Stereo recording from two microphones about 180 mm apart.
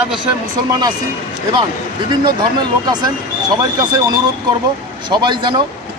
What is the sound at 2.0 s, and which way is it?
Speech, 25° right (ahead or behind).